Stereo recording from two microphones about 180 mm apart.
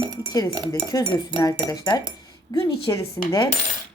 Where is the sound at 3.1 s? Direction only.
15° left (ahead or behind).